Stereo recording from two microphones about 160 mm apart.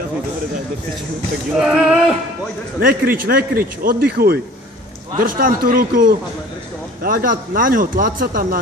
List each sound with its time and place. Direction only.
1.6 s male singing: 5° right (ahead or behind)
2.8 s speech: 65° right (ahead or behind)
5.2 s speech: 60° right (ahead or behind)